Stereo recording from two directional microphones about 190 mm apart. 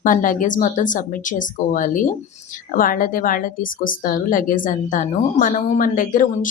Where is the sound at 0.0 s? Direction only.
45° left (ahead or behind).